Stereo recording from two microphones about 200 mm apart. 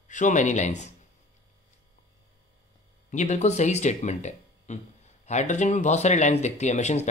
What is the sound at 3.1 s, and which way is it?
Speech, 35° left (ahead or behind).